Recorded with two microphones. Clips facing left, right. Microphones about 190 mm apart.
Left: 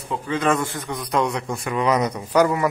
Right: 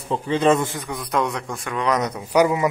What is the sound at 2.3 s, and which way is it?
Speech, 15° right (ahead or behind).